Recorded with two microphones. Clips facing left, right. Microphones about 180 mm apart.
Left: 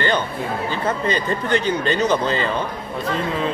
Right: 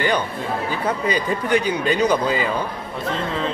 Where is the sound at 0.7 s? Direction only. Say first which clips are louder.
Left 1 dB; 10° right (ahead or behind).